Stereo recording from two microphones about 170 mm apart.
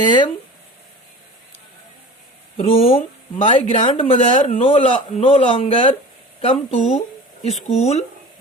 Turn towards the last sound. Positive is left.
turn(degrees=40)  # may be behind; listen again after turning